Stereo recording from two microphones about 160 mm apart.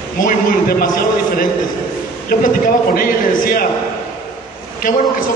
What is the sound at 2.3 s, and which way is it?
A man's voice, 60° left (ahead or behind).